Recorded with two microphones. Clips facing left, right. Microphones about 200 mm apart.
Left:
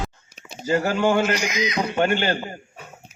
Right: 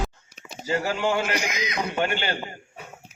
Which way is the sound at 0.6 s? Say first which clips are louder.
Left 5 dB; 40° left (ahead or behind).